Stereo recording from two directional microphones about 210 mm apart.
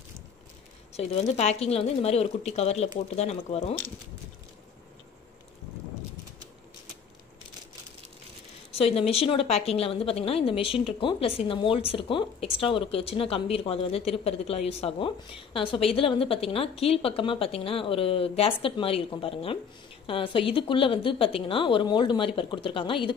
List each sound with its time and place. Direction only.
0.9 s speech: 30° left (ahead or behind)
8.7 s speech: 30° left (ahead or behind)